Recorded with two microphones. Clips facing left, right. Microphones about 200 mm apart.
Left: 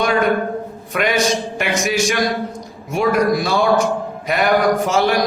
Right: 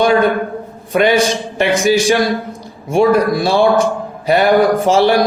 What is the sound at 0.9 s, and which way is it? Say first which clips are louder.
A man's voice: right 5 dB; 30° right (ahead or behind).